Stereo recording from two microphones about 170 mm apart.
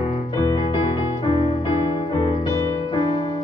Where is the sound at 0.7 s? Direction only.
30° left (ahead or behind).